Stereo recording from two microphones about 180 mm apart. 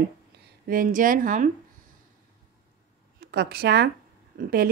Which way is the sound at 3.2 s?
60° right (ahead or behind).